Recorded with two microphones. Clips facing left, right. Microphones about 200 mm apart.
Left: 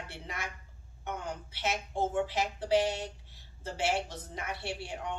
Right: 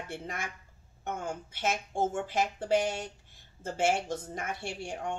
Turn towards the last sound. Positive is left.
turn(degrees=-45)  # may be behind; listen again after turning